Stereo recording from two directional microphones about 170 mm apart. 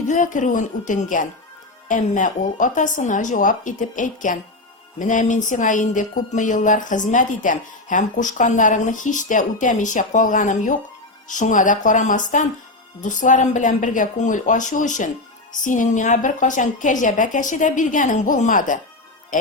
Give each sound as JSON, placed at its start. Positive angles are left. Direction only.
{"t": 0.1, "sound": "speech", "side_deg": 45}